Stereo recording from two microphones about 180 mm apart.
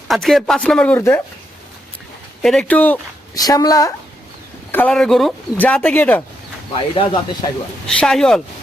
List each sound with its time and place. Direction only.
0.1 s speech: centre (ahead or behind)
2.4 s speech: 5° left (ahead or behind)
3.3 s speech: 20° left (ahead or behind)
4.7 s speech: 10° left (ahead or behind)
6.9 s speech: 30° left (ahead or behind)
7.9 s speech: centre (ahead or behind)